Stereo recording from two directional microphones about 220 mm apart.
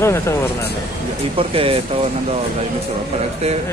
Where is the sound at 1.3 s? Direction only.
25° right (ahead or behind).